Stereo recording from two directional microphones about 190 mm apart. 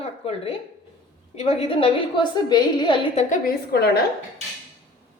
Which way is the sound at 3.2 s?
45° left (ahead or behind).